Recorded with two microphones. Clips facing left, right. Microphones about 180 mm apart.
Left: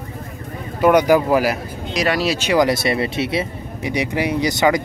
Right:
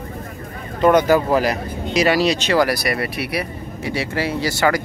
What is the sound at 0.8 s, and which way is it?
Speech, 10° left (ahead or behind).